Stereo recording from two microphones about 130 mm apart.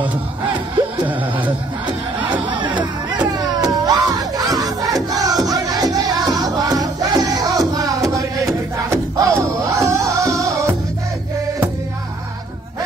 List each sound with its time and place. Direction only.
2.7 s music: 35° right (ahead or behind)